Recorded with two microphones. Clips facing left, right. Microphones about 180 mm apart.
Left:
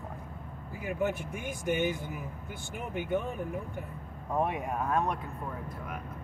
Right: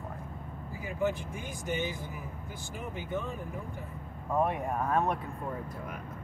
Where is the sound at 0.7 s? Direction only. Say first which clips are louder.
Even; 60° left (ahead or behind).